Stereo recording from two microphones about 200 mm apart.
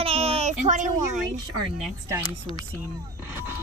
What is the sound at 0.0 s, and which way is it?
Speech, 30° right (ahead or behind).